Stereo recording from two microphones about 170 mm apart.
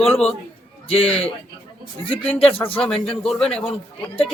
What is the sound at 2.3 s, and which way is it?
Speech, 35° left (ahead or behind).